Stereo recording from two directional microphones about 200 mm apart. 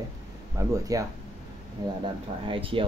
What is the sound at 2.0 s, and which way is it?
Speech, 25° right (ahead or behind).